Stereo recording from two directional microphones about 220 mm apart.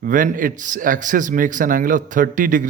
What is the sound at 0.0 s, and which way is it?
A man's voice, 35° right (ahead or behind).